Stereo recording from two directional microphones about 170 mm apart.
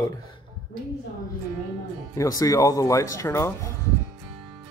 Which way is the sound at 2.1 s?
20° left (ahead or behind).